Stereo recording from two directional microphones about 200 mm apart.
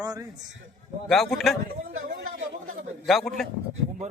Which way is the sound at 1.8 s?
45° right (ahead or behind).